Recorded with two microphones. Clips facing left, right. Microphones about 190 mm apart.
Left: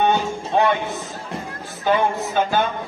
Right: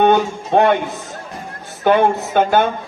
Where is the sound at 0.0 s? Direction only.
60° right (ahead or behind).